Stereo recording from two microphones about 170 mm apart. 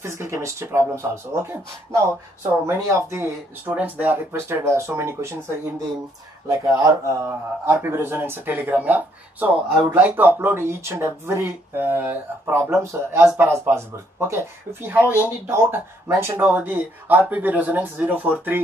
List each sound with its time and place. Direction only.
0.2 s speech: 15° right (ahead or behind)
6.4 s speech: 20° right (ahead or behind)